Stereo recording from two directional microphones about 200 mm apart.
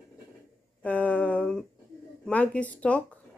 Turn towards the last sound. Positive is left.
turn(degrees=5)  # may be behind; listen again after turning